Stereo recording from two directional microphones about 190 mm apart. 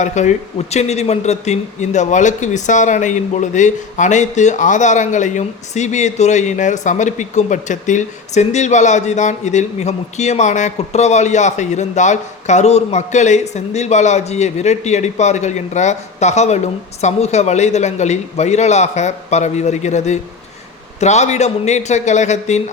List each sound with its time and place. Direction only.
0.0 s a man's voice: 40° left (ahead or behind)